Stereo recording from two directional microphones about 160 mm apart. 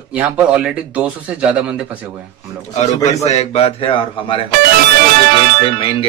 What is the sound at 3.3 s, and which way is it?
Speech, 45° left (ahead or behind).